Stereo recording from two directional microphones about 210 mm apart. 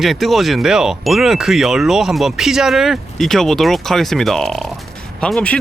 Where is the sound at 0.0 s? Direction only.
Centre (ahead or behind).